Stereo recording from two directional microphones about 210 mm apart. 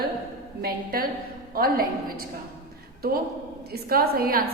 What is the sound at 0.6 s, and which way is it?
A woman's voice, 45° right (ahead or behind).